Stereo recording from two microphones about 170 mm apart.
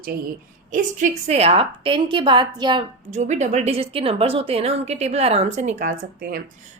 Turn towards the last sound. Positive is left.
turn(degrees=-60)  # may be behind; listen again after turning